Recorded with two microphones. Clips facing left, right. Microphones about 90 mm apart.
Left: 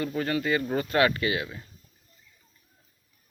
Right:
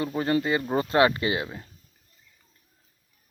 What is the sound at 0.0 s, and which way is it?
Speech, 25° right (ahead or behind).